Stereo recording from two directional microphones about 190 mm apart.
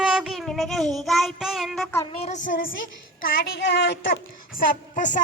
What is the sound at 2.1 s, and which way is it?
A woman's voice, 35° left (ahead or behind).